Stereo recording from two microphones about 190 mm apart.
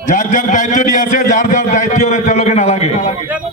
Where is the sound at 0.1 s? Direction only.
45° left (ahead or behind).